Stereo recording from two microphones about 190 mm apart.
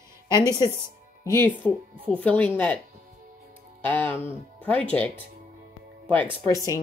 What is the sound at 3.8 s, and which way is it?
Speech, 10° left (ahead or behind).